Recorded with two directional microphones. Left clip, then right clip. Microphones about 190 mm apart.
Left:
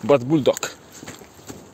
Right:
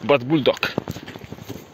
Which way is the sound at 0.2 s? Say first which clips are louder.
Even; 10° left (ahead or behind).